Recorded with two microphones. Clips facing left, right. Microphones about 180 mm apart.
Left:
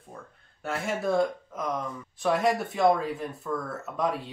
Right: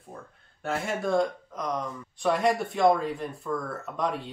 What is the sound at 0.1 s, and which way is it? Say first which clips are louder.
Speech: right 1 dB; centre (ahead or behind).